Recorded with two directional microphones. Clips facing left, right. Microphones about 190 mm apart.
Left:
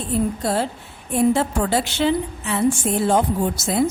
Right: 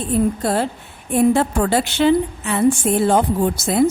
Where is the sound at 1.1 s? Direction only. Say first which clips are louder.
Right 3 dB; 55° right (ahead or behind).